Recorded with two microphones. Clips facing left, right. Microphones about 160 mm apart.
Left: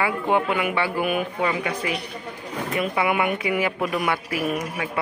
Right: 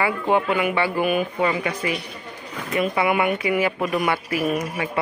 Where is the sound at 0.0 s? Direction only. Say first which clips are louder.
Right 1 dB; centre (ahead or behind).